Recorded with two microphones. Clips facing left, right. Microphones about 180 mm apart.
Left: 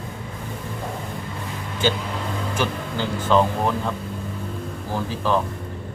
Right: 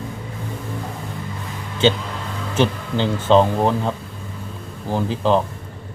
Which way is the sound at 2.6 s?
20° right (ahead or behind).